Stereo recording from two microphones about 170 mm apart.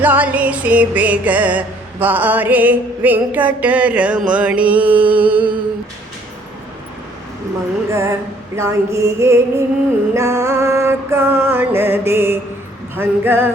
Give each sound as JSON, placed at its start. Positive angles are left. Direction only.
{"t": 0.0, "sound": "music", "side_deg": -10}
{"t": 7.9, "sound": "music", "side_deg": -15}